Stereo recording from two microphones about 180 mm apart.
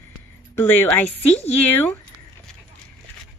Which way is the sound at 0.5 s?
10° left (ahead or behind).